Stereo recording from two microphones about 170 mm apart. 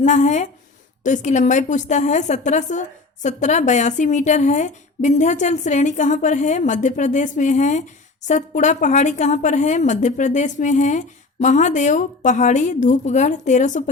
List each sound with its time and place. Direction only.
0.0 s a woman's voice: 45° left (ahead or behind)